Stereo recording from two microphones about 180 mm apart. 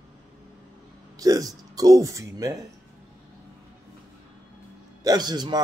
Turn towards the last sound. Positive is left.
turn(degrees=-25)  # may be behind; listen again after turning